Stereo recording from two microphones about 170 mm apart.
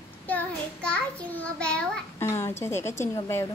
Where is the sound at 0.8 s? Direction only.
5° left (ahead or behind).